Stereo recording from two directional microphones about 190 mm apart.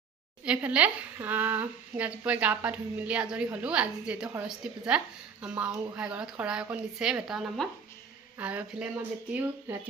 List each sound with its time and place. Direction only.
0.4 s speech: 5° right (ahead or behind)